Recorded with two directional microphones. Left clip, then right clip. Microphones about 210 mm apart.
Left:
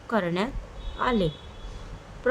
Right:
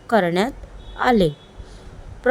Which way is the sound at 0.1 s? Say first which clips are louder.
Right 8 dB; 30° right (ahead or behind).